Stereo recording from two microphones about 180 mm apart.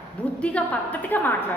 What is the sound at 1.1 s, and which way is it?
Speech, 10° left (ahead or behind).